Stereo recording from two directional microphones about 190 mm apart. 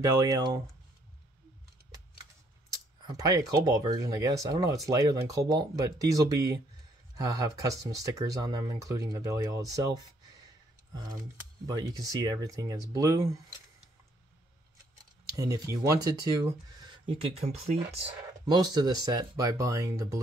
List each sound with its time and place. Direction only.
0.0 s speech: 20° right (ahead or behind)
3.2 s speech: 20° right (ahead or behind)
11.6 s speech: 20° right (ahead or behind)
15.3 s speech: 15° right (ahead or behind); by 18.0 s 35° right (ahead or behind)
18.4 s speech: 20° right (ahead or behind)